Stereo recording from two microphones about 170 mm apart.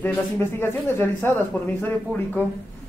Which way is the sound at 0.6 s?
15° left (ahead or behind).